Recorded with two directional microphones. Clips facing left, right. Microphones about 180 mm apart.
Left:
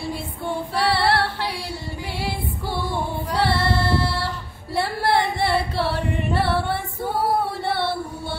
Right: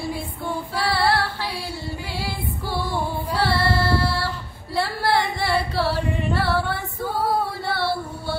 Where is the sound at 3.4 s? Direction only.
20° left (ahead or behind).